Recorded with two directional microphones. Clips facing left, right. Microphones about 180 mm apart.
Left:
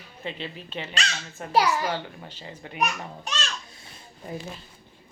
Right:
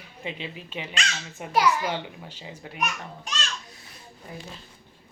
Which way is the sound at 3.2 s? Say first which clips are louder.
Left 1 dB; 25° left (ahead or behind).